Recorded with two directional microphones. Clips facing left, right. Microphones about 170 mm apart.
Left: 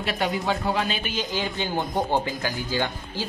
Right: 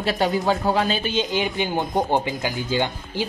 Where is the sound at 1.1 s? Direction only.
20° right (ahead or behind).